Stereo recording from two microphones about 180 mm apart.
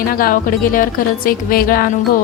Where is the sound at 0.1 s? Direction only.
55° left (ahead or behind).